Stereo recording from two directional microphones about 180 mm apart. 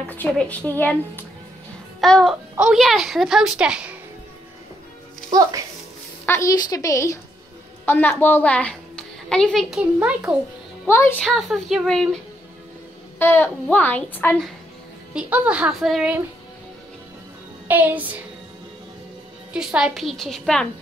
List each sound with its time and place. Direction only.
0.1 s a woman's voice: 10° left (ahead or behind)
2.0 s music: centre (ahead or behind)
2.5 s a woman's voice: 5° right (ahead or behind)
6.2 s a woman's voice: 15° left (ahead or behind); by 10.3 s 5° right (ahead or behind)
10.9 s a woman's voice: 15° left (ahead or behind)
11.2 s a woman's voice: centre (ahead or behind)
13.2 s a woman's voice: 10° left (ahead or behind)
15.1 s speech: 5° right (ahead or behind)
17.6 s speech: 10° right (ahead or behind)
19.5 s a woman's voice: 5° right (ahead or behind)